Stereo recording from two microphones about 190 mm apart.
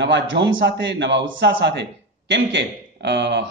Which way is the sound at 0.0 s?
65° right (ahead or behind).